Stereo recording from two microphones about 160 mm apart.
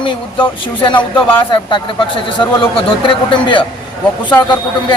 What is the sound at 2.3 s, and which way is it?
A man's voice, 30° left (ahead or behind).